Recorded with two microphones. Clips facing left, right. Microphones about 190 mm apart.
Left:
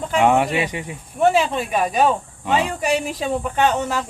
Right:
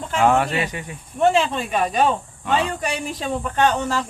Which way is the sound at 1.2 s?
5° left (ahead or behind).